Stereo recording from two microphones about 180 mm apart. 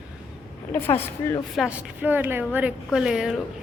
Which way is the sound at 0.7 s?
10° left (ahead or behind).